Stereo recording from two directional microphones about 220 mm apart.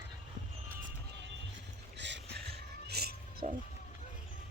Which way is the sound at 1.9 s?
50° right (ahead or behind).